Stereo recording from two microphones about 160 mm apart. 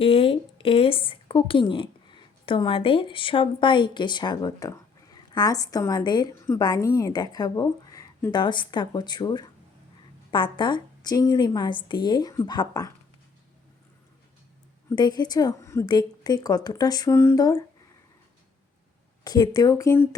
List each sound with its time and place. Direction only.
0.0 s a woman's voice: 35° left (ahead or behind)
14.8 s a woman's voice: 25° left (ahead or behind)
19.2 s a woman's voice: 25° left (ahead or behind)